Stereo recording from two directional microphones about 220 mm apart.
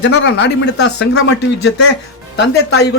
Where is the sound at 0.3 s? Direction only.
50° left (ahead or behind).